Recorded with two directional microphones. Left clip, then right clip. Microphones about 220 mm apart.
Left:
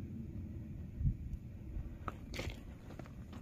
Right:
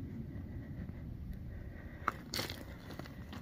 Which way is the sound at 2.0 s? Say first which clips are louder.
Right 8 dB; 55° right (ahead or behind).